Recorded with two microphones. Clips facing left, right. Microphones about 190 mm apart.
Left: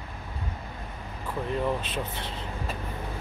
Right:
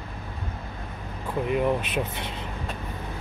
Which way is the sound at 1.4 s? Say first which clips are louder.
Right 4 dB; 15° right (ahead or behind).